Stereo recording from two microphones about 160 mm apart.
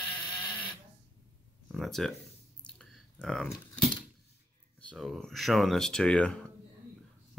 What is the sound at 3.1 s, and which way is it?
Speech, 5° left (ahead or behind).